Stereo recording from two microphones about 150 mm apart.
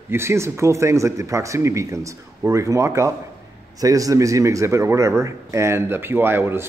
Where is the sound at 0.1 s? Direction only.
15° right (ahead or behind).